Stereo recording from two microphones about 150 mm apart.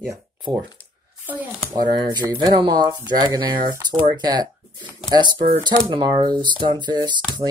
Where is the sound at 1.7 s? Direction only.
25° right (ahead or behind).